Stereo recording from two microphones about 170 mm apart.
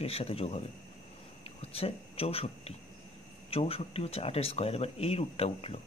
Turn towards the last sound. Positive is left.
turn(degrees=35)  # may be behind; listen again after turning